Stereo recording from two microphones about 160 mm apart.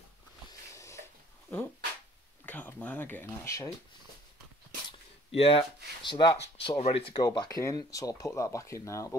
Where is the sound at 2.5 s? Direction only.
10° left (ahead or behind).